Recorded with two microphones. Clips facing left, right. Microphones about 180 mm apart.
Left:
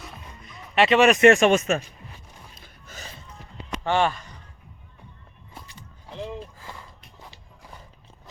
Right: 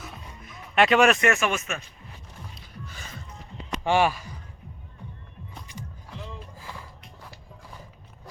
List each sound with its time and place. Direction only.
0.0 s music: centre (ahead or behind)
1.1 s speech: 30° left (ahead or behind)
2.6 s music: 45° left (ahead or behind)
3.8 s speech: 10° right (ahead or behind)